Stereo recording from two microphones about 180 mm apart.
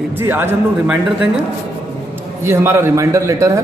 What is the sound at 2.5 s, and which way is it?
Speech, 15° right (ahead or behind).